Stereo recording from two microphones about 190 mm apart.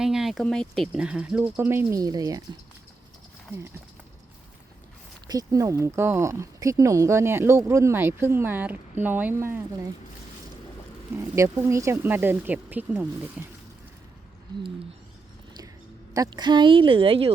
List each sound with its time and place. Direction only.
0.0 s speech: centre (ahead or behind); by 2.4 s 20° right (ahead or behind)
5.3 s speech: 20° right (ahead or behind)
11.2 s speech: 15° right (ahead or behind)
16.1 s speech: 20° right (ahead or behind)